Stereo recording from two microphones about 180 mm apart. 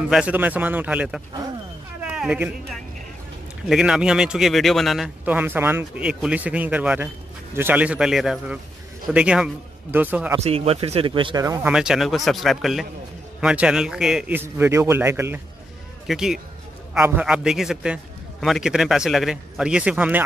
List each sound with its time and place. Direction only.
0.1 s a man's voice: 5° right (ahead or behind)
2.0 s a sound: 5° right (ahead or behind)
3.6 s a man's voice: 5° right (ahead or behind)
10.4 s speech: 35° right (ahead or behind)
11.4 s a man's voice: 15° right (ahead or behind)
11.7 s a man's voice: 5° right (ahead or behind)
16.1 s a man's voice: 5° right (ahead or behind)